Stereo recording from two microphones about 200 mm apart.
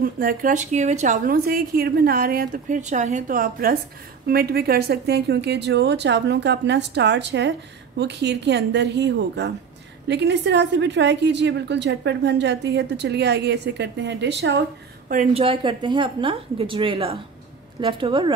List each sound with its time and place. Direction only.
0.0 s a woman's voice: 45° right (ahead or behind)
15.3 s a woman's voice: 25° right (ahead or behind)